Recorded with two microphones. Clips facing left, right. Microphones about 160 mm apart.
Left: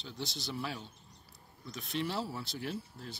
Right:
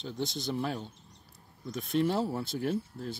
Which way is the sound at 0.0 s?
45° right (ahead or behind).